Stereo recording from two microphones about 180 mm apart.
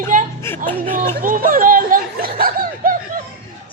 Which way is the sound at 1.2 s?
50° right (ahead or behind).